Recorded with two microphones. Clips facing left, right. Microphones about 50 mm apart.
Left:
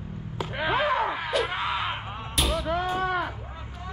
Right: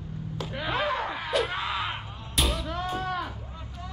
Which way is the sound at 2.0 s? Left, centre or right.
Left.